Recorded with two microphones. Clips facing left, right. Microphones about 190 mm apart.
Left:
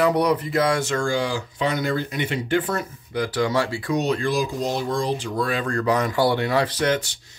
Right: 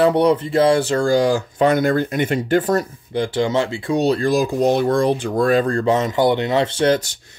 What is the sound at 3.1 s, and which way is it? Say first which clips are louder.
Speech: right 3 dB; 25° right (ahead or behind).